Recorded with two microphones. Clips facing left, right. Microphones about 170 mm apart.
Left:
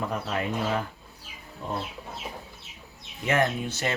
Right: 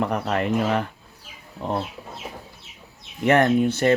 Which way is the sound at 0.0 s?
65° right (ahead or behind).